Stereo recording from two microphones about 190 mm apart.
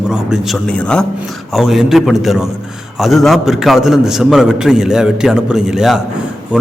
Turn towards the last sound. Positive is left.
turn(degrees=-5)  # may be behind; listen again after turning